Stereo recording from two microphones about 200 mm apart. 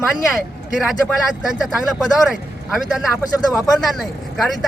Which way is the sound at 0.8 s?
Centre (ahead or behind).